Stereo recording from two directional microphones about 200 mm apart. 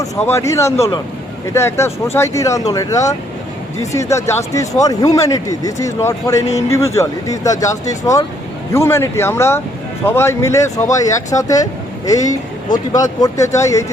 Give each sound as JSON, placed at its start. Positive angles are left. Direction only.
{"t": 0.0, "sound": "speech", "side_deg": 15}